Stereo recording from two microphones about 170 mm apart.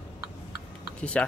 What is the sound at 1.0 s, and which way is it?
Speech, 5° left (ahead or behind).